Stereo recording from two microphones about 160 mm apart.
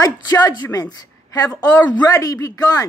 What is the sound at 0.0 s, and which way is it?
Speech, 25° left (ahead or behind).